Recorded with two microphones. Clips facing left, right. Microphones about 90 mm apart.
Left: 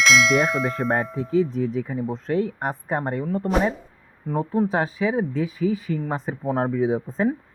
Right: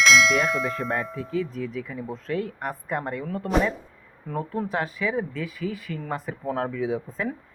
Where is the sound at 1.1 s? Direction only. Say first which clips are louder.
Left 7 dB; 35° left (ahead or behind).